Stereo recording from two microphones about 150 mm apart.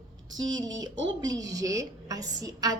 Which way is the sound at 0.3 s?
25° right (ahead or behind).